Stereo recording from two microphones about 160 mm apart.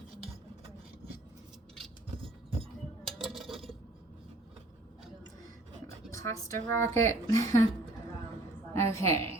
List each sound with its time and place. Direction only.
3.0 s a sound: centre (ahead or behind)
6.1 s a woman's voice: 20° left (ahead or behind)
8.7 s a woman's voice: 15° left (ahead or behind)